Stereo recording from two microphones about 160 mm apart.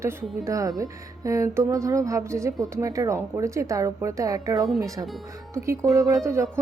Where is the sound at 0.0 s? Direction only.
15° right (ahead or behind).